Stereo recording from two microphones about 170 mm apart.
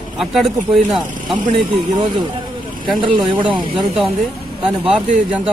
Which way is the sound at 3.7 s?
Centre (ahead or behind).